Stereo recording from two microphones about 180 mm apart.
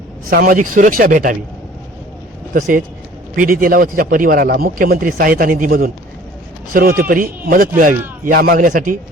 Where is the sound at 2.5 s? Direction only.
50° right (ahead or behind).